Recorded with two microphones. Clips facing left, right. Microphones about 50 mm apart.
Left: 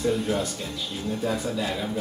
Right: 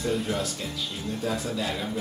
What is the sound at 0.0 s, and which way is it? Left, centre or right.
Speech, centre.